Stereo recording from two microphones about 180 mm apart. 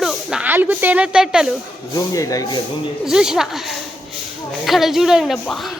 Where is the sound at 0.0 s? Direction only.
Centre (ahead or behind).